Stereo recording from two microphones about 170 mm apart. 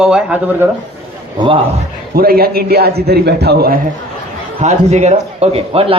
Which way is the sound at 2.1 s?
60° right (ahead or behind).